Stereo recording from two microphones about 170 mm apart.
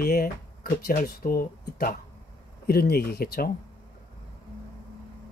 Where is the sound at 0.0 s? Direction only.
60° left (ahead or behind).